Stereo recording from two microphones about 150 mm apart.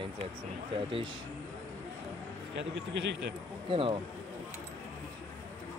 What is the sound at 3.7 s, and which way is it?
Speech, 35° right (ahead or behind).